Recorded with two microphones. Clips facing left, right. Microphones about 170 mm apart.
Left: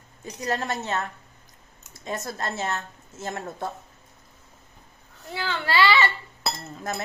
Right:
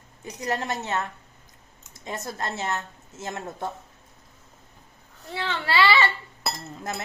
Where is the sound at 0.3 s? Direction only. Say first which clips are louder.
Even; 20° right (ahead or behind).